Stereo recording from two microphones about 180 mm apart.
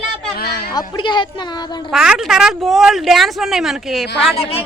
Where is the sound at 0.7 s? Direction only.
25° left (ahead or behind).